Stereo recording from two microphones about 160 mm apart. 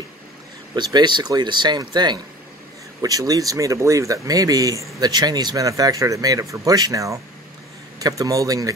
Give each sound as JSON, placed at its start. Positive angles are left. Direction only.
{"t": 0.7, "sound": "speech", "side_deg": -30}